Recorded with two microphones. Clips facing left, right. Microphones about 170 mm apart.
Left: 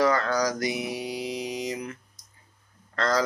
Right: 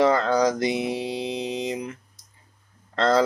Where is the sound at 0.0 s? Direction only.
25° right (ahead or behind).